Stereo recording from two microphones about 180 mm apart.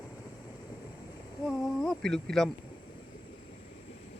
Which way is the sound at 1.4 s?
Centre (ahead or behind).